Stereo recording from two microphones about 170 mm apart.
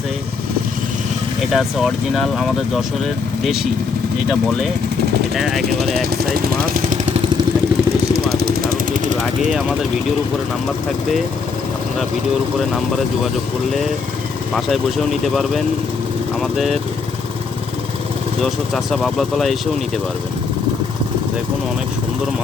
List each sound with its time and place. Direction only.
1.5 s speech: centre (ahead or behind)
5.3 s speech: centre (ahead or behind)
6.1 s a sound: 60° right (ahead or behind)
8.1 s vehicle: 60° right (ahead or behind)
14.5 s speech: centre (ahead or behind)
18.3 s speech: centre (ahead or behind)